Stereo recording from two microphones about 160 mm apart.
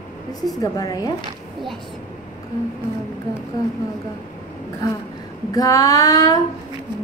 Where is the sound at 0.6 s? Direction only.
25° left (ahead or behind).